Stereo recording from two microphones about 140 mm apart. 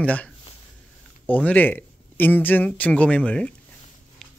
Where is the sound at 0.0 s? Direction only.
10° left (ahead or behind).